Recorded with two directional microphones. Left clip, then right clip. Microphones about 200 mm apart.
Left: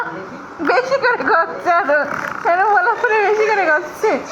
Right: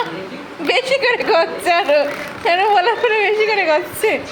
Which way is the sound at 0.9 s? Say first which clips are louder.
Even; 25° right (ahead or behind).